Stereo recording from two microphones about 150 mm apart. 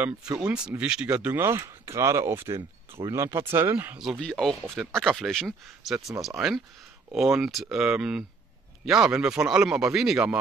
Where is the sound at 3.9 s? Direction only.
Centre (ahead or behind).